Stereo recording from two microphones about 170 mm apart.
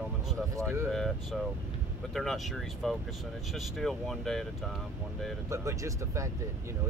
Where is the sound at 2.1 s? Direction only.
Centre (ahead or behind).